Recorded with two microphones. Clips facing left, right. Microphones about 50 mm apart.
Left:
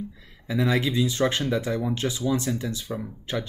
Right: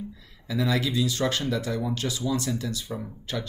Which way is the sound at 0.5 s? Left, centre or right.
Left.